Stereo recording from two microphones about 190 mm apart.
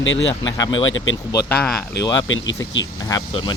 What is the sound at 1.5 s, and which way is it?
Speech, 5° left (ahead or behind).